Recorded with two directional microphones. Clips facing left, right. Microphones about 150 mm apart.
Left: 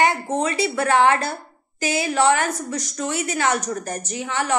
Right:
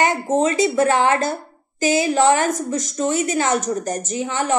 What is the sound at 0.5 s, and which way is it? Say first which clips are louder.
Speech: right 2 dB; 45° right (ahead or behind).